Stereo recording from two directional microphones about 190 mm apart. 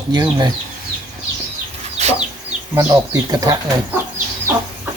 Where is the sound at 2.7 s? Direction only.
15° right (ahead or behind).